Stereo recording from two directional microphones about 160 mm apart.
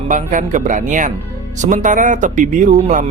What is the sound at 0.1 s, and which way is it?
A man's voice, 55° right (ahead or behind).